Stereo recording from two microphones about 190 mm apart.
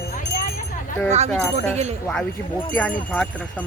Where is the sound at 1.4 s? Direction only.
10° left (ahead or behind).